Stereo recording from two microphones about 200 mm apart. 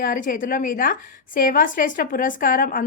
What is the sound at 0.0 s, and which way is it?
A woman's voice, 45° left (ahead or behind).